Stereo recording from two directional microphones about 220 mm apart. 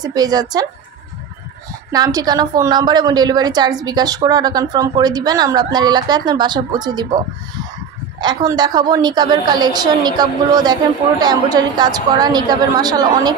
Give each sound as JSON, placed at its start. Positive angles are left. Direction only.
{"t": 0.0, "sound": "speech", "side_deg": -20}
{"t": 1.9, "sound": "a woman's voice", "side_deg": -15}
{"t": 8.2, "sound": "a woman's voice", "side_deg": -20}